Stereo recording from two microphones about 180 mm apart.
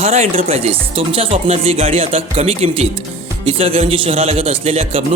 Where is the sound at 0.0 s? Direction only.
40° right (ahead or behind).